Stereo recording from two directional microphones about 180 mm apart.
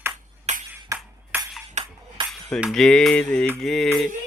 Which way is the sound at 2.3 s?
Centre (ahead or behind).